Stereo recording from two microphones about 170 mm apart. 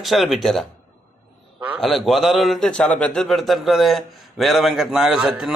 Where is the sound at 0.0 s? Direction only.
Centre (ahead or behind).